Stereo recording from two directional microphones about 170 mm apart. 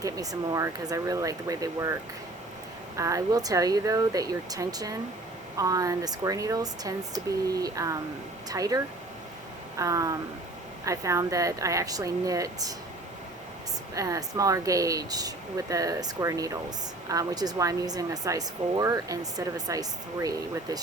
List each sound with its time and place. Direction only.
0.0 s speech: 20° right (ahead or behind)
13.9 s speech: 20° right (ahead or behind)